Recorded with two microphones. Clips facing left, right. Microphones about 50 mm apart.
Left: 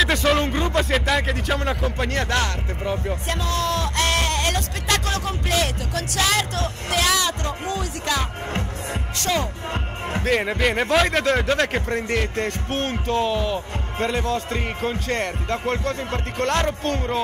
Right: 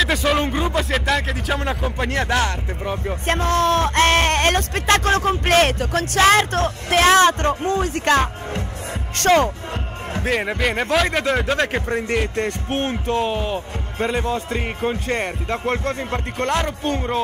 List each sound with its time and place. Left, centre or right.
0.0 s speech: centre
3.3 s speech: right
10.2 s speech: centre
12.4 s speech: right
13.9 s speech: centre